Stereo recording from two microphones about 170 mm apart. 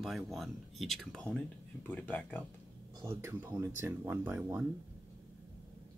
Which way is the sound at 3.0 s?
15° right (ahead or behind).